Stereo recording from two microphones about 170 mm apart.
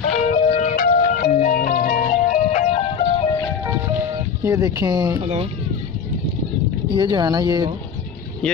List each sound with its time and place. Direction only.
0.3 s music: 45° left (ahead or behind)
2.7 s music: 35° left (ahead or behind)
4.5 s speech: 20° right (ahead or behind)
5.2 s speech: 40° right (ahead or behind)
7.0 s speech: 25° right (ahead or behind)